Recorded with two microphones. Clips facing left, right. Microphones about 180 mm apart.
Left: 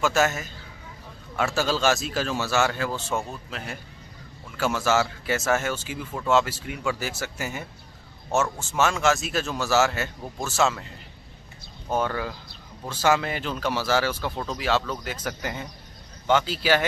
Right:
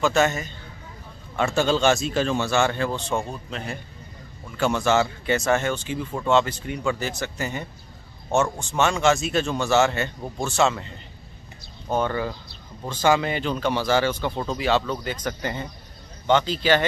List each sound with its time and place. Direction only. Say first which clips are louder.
0.0 s speech: right 2 dB; 5° left (ahead or behind)
11.9 s speech: right 2 dB; 10° left (ahead or behind)